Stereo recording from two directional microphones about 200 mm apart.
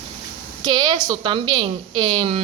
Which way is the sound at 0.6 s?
20° right (ahead or behind).